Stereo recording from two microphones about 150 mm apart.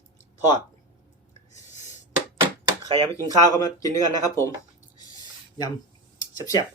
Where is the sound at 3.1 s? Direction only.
25° left (ahead or behind).